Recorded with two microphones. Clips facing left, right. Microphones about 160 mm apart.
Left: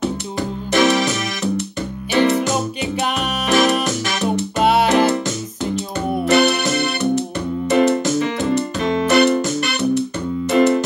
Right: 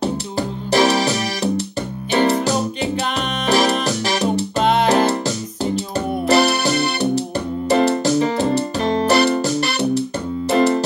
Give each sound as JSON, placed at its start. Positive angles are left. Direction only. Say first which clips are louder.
{"t": 0.0, "sound": "keyboard", "louder": "right 1 dB", "side_deg": -35}
{"t": 2.1, "sound": "music", "louder": "even", "side_deg": -35}
{"t": 4.6, "sound": "music", "louder": "left 2 dB", "side_deg": 5}
{"t": 4.8, "sound": "music", "louder": "even", "side_deg": -35}